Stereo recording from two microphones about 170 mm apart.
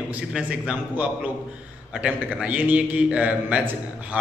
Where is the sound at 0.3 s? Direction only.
5° right (ahead or behind).